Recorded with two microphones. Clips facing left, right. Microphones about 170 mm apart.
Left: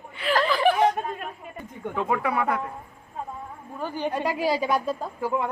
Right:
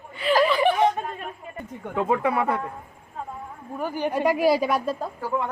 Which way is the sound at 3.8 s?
10° right (ahead or behind).